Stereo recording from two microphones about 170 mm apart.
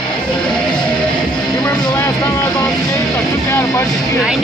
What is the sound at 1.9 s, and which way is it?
Vehicle, 20° left (ahead or behind).